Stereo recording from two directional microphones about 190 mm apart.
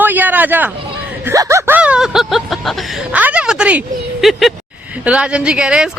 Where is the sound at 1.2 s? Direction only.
15° right (ahead or behind).